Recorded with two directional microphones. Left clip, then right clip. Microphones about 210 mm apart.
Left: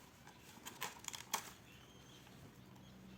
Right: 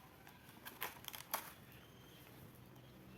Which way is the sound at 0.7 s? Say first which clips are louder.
Left 1 dB; 10° left (ahead or behind).